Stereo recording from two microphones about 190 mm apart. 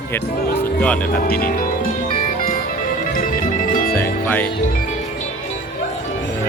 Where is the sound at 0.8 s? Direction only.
5° left (ahead or behind).